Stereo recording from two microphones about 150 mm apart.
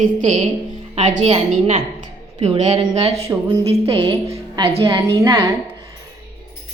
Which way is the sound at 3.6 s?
40° right (ahead or behind).